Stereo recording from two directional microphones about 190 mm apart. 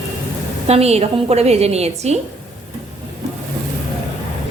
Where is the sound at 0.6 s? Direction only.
35° right (ahead or behind).